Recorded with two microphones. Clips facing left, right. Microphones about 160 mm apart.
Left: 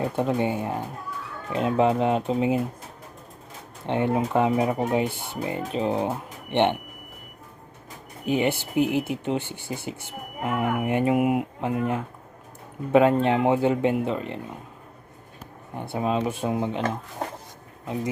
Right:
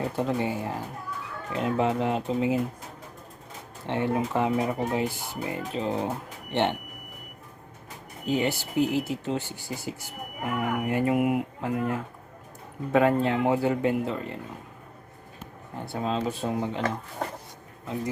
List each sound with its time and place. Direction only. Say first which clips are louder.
0.2 s speech: left 3 dB; 20° left (ahead or behind)
3.8 s speech: left 3 dB; 20° left (ahead or behind)
8.2 s speech: left 3 dB; 20° left (ahead or behind)
15.7 s speech: left 4 dB; 15° left (ahead or behind)